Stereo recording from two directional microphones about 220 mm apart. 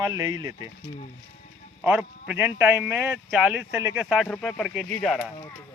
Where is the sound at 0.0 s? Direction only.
15° right (ahead or behind).